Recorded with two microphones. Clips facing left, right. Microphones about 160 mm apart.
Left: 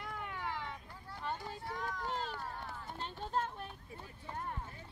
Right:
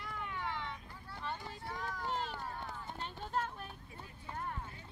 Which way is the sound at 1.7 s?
Centre (ahead or behind).